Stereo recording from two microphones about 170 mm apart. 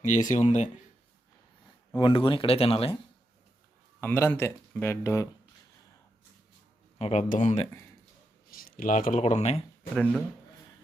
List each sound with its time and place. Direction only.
0.0 s speech: 45° left (ahead or behind)
2.0 s speech: 30° left (ahead or behind)
4.0 s speech: 10° left (ahead or behind)
7.0 s speech: 45° left (ahead or behind)
8.4 s speech: 60° left (ahead or behind); by 9.6 s 40° left (ahead or behind)
9.9 s speech: centre (ahead or behind)